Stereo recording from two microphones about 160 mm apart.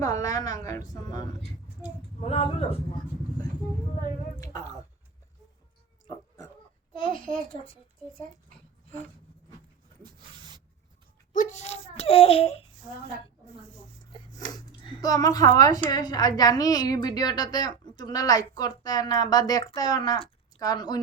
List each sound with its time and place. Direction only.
0.0 s a woman's voice: 20° left (ahead or behind)
2.2 s speech: 40° left (ahead or behind)
7.5 s speech: 35° left (ahead or behind)
10.0 s dog: 25° right (ahead or behind)
11.3 s a child's voice: 50° left (ahead or behind)
14.4 s a sound: 25° left (ahead or behind)
14.8 s a woman's voice: 25° left (ahead or behind)